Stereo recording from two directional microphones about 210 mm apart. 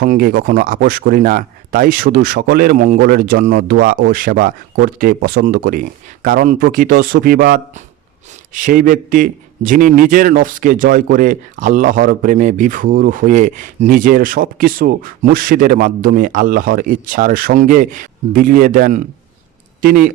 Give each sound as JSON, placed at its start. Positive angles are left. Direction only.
{"t": 0.0, "sound": "a man's voice", "side_deg": -45}